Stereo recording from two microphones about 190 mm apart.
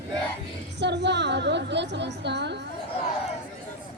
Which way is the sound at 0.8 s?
65° right (ahead or behind).